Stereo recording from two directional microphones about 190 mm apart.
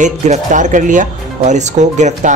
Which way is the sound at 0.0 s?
40° right (ahead or behind).